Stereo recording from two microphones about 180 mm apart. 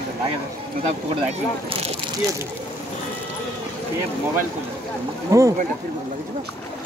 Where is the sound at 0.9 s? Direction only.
35° right (ahead or behind).